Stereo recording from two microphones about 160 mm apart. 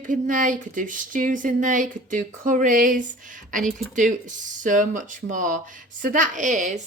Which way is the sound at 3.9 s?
50° right (ahead or behind).